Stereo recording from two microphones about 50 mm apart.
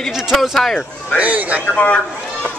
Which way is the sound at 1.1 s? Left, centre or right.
Right.